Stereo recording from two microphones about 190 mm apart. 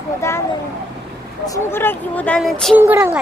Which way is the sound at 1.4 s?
15° left (ahead or behind).